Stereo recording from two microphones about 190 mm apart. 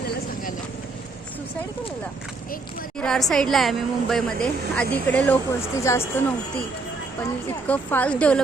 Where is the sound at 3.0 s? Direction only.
Centre (ahead or behind).